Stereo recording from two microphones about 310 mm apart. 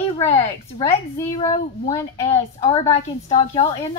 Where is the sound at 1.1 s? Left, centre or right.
Centre.